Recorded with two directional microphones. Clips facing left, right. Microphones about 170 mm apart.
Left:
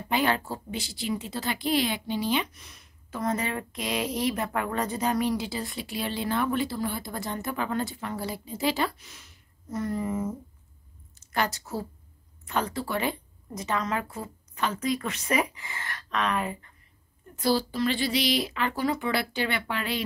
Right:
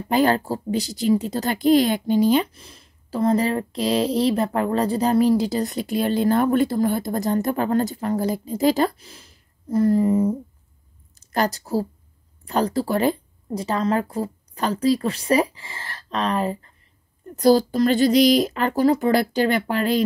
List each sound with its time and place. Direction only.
0.1 s a woman's voice: 40° right (ahead or behind)